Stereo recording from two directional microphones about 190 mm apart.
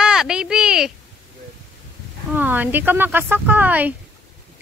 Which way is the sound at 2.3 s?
10° right (ahead or behind).